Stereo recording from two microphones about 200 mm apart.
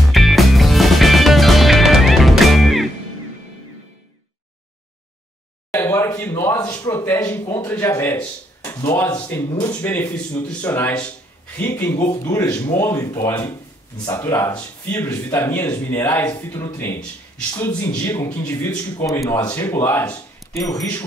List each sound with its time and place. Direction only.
0.1 s music: centre (ahead or behind)
5.7 s speech: 10° left (ahead or behind)
9.8 s speech: 10° left (ahead or behind)